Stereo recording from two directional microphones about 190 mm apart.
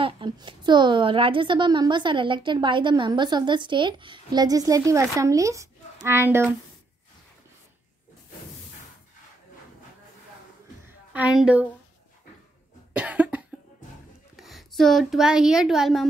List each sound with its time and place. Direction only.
0.0 s a woman's voice: 25° right (ahead or behind)
11.1 s a woman's voice: 5° right (ahead or behind)
12.9 s cough: 5° right (ahead or behind)
14.3 s a woman's voice: centre (ahead or behind)